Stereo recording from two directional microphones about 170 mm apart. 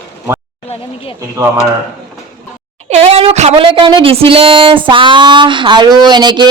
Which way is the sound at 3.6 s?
30° right (ahead or behind).